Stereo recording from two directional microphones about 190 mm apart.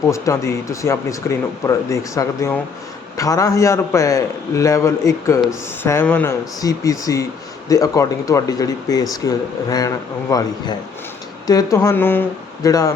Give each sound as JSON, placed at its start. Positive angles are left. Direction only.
{"t": 0.1, "sound": "speech", "side_deg": 15}